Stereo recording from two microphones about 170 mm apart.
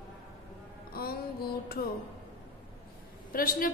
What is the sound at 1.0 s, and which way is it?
Music, 60° left (ahead or behind).